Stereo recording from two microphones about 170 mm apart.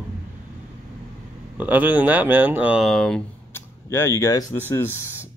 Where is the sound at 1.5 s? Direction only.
10° right (ahead or behind).